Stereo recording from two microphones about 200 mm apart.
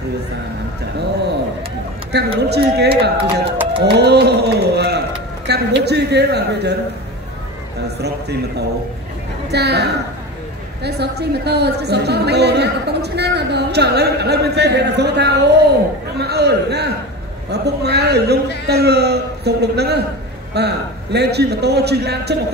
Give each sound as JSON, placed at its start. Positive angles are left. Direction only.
{"t": 2.1, "sound": "a woman's voice", "side_deg": -55}
{"t": 8.0, "sound": "a woman's voice", "side_deg": -55}